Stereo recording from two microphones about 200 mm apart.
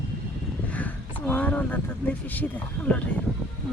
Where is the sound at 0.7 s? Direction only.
10° left (ahead or behind).